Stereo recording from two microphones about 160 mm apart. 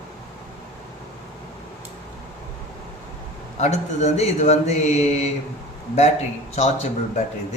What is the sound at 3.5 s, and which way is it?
A man's voice, 45° left (ahead or behind).